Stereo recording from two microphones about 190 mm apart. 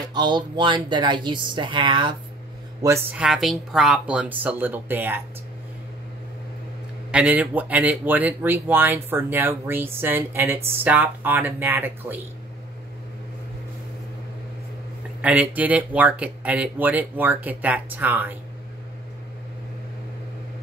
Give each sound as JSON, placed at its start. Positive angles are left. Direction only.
{"t": 0.0, "sound": "speech", "side_deg": -20}
{"t": 2.8, "sound": "speech", "side_deg": -10}
{"t": 7.1, "sound": "speech", "side_deg": -5}
{"t": 15.2, "sound": "speech", "side_deg": -10}